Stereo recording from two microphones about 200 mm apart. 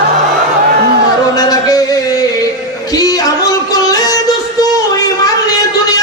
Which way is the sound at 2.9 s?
20° left (ahead or behind).